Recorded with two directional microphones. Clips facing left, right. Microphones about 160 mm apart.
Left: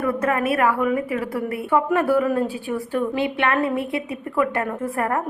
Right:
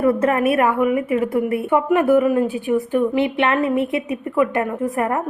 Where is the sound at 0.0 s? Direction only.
30° right (ahead or behind).